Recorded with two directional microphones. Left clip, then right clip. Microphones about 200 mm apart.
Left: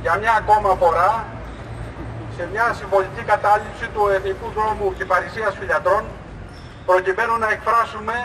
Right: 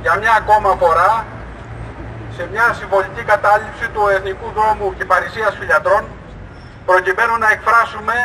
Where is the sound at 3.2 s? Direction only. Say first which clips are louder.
Right 6 dB; 25° right (ahead or behind).